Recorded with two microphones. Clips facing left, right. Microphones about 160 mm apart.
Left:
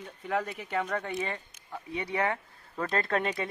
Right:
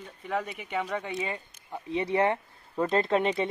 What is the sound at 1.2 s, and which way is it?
Speech, 15° right (ahead or behind).